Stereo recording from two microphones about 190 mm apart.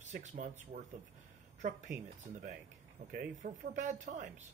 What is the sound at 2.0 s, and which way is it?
Speech, 40° right (ahead or behind).